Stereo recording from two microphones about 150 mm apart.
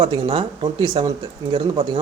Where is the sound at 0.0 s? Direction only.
30° right (ahead or behind).